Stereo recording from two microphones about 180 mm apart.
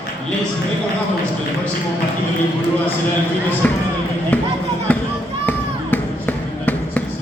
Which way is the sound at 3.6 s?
5° left (ahead or behind).